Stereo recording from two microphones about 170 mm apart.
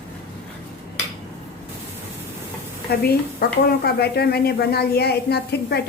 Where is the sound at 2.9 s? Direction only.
70° left (ahead or behind).